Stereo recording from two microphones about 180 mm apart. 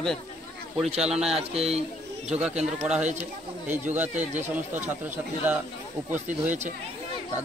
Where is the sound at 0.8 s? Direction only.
35° right (ahead or behind).